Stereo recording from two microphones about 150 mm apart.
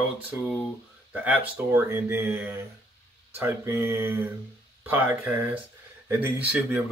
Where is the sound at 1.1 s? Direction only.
10° right (ahead or behind).